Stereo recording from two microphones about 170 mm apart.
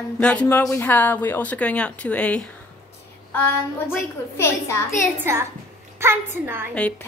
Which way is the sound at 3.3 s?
10° left (ahead or behind).